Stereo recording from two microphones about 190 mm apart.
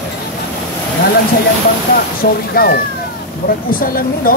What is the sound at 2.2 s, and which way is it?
Speech, 55° left (ahead or behind).